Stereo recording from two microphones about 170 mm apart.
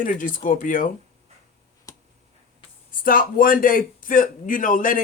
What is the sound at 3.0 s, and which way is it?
A man's voice, 55° left (ahead or behind).